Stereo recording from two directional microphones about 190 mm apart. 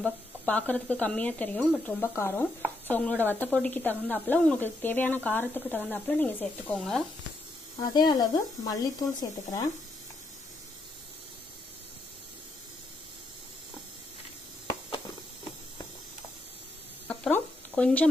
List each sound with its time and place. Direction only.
0.0 s speech: 5° left (ahead or behind)
8.1 s speech: 20° left (ahead or behind)
17.1 s a sound: 5° left (ahead or behind)